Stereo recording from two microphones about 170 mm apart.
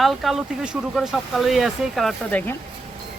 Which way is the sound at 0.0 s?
Centre (ahead or behind).